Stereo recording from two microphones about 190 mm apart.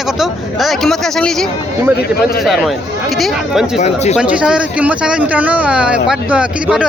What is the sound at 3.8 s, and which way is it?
Speech, 35° left (ahead or behind).